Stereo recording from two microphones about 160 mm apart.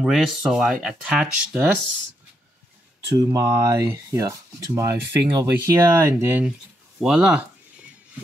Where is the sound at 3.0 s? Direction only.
25° right (ahead or behind); by 7.3 s 5° right (ahead or behind).